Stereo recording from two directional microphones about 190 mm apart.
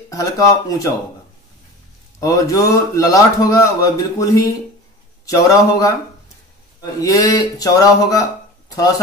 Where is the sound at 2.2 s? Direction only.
15° left (ahead or behind).